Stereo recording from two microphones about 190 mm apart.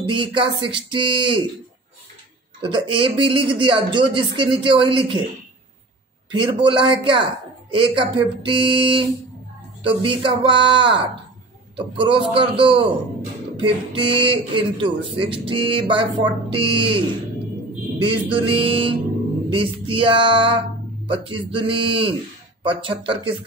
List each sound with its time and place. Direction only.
0.0 s a man's voice: 25° right (ahead or behind)
2.6 s a man's voice: 25° right (ahead or behind)
6.3 s a man's voice: 25° right (ahead or behind)
18.0 s a man's voice: 25° right (ahead or behind)